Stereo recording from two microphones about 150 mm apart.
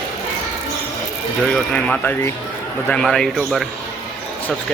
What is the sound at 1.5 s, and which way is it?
A man's voice, 5° left (ahead or behind).